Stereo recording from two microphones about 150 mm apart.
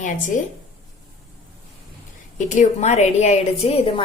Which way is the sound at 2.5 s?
55° left (ahead or behind).